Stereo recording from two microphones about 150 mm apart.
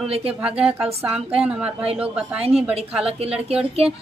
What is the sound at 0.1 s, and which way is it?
Speech, 40° right (ahead or behind).